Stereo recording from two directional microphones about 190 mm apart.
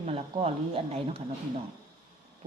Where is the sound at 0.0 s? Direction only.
30° right (ahead or behind).